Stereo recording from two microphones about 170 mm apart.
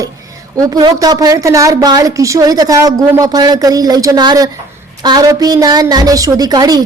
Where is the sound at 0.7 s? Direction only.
25° right (ahead or behind).